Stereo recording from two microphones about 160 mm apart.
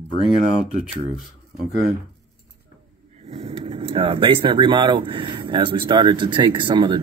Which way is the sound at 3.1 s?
45° right (ahead or behind).